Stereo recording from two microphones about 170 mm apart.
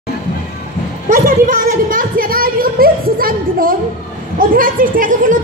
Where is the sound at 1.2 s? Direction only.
55° right (ahead or behind).